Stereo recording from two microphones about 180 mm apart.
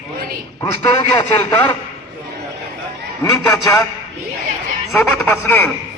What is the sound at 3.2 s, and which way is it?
Speech, 15° left (ahead or behind).